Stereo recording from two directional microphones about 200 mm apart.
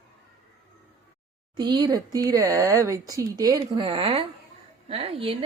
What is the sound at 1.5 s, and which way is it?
A woman's voice, 20° right (ahead or behind).